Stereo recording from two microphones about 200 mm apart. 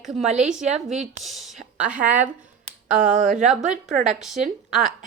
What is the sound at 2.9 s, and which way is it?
Speech, 5° right (ahead or behind).